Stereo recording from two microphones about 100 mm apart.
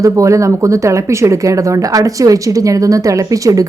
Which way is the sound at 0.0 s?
30° right (ahead or behind).